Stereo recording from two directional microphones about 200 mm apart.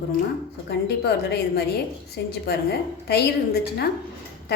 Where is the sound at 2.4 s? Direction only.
55° left (ahead or behind).